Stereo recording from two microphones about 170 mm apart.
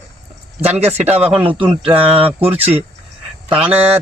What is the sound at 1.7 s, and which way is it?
Speech, 35° right (ahead or behind).